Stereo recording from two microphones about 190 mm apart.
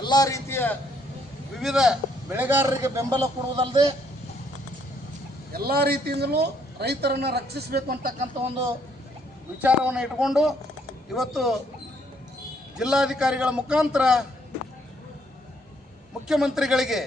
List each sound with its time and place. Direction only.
0.0 s a man's voice: 20° left (ahead or behind)
1.5 s a man's voice: centre (ahead or behind); by 3.8 s 25° right (ahead or behind)
5.5 s a man's voice: 55° right (ahead or behind)
9.6 s a man's voice: 10° right (ahead or behind)
12.7 s a man's voice: 5° right (ahead or behind)
16.2 s a man's voice: centre (ahead or behind)